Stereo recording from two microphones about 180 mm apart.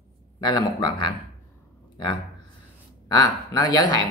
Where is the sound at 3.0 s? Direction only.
20° left (ahead or behind).